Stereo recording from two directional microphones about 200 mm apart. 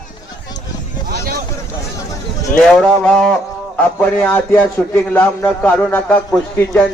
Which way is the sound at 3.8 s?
5° left (ahead or behind).